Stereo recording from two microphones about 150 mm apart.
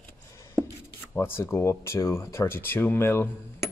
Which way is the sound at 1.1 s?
15° left (ahead or behind).